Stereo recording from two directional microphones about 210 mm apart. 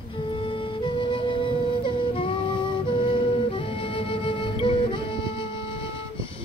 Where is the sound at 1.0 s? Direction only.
25° left (ahead or behind).